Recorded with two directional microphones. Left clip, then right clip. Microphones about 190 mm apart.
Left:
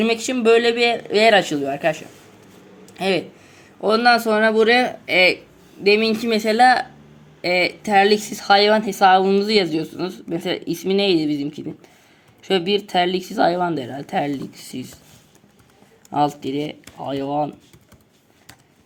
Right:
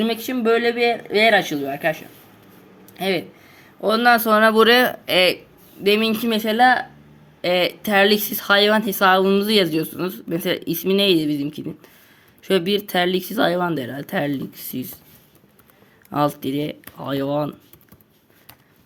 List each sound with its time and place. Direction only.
0.0 s speech: 5° right (ahead or behind)
3.8 s a woman's voice: 20° right (ahead or behind)
7.4 s a woman's voice: 25° right (ahead or behind)